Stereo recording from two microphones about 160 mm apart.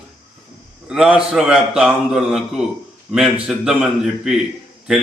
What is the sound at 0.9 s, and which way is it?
A man's voice, 5° right (ahead or behind).